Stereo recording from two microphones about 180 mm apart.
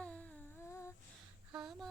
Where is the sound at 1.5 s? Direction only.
Centre (ahead or behind).